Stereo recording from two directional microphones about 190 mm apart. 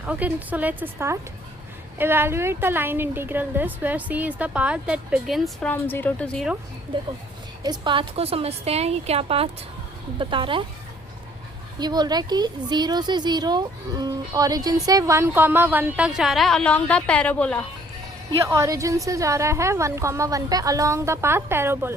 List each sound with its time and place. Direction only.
0.0 s a woman's voice: 10° right (ahead or behind)
6.9 s a woman's voice: 25° right (ahead or behind)
11.8 s speech: 20° right (ahead or behind); by 17.7 s 5° left (ahead or behind)
18.4 s a woman's voice: 15° right (ahead or behind)